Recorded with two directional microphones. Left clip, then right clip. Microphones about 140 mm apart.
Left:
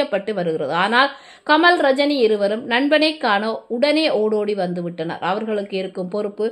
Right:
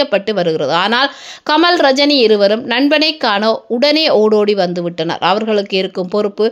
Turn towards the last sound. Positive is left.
turn(degrees=-50)  # may be behind; listen again after turning